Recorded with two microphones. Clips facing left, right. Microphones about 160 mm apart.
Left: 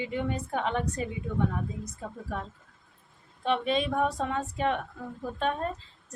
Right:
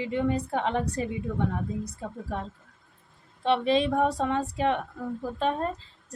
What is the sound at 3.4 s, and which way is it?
A woman's voice, 35° right (ahead or behind).